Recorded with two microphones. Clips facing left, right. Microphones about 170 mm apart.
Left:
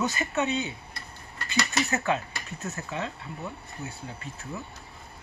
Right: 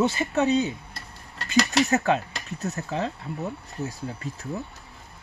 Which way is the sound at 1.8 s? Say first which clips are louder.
Right 5 dB; 40° right (ahead or behind).